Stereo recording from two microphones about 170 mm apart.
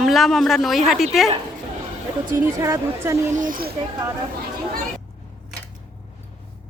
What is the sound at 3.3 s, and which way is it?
Speech, 50° right (ahead or behind).